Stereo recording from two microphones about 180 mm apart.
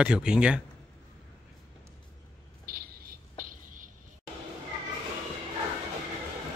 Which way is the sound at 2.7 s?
55° right (ahead or behind).